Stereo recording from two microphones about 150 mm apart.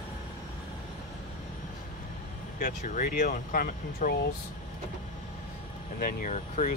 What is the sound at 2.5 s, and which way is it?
Speech, 60° left (ahead or behind).